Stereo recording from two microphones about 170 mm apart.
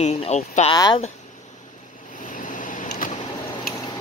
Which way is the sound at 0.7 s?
20° left (ahead or behind).